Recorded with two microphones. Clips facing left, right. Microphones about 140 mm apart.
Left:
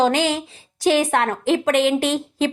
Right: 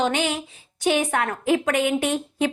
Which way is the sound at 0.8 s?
90° left.